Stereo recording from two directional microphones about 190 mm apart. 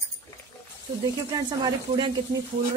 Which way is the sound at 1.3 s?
20° right (ahead or behind).